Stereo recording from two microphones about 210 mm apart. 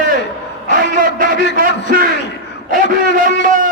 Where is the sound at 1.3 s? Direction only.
55° left (ahead or behind).